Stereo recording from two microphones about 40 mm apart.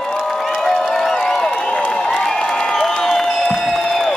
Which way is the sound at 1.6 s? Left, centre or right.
Left.